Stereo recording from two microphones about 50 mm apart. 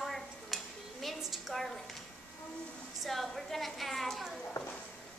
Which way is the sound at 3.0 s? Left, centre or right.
Centre.